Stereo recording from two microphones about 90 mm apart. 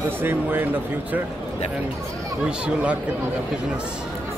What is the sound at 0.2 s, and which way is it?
Speech, 25° right (ahead or behind).